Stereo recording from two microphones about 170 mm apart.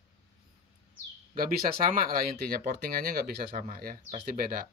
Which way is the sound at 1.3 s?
55° right (ahead or behind).